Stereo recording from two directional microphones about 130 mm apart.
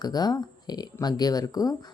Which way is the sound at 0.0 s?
30° left (ahead or behind).